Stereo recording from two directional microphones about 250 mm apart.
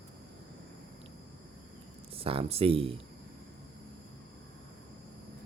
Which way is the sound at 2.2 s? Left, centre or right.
Right.